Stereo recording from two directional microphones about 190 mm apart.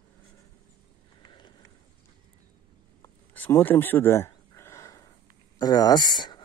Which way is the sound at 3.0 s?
10° left (ahead or behind).